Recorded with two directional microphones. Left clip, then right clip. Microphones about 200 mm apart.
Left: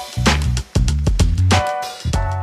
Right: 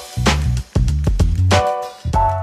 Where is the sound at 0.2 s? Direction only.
Centre (ahead or behind).